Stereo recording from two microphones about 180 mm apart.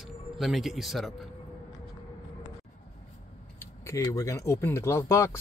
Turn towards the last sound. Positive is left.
turn(degrees=15)  # may be behind; listen again after turning